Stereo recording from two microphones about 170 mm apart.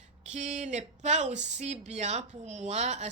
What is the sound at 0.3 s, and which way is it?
Speech, 45° right (ahead or behind).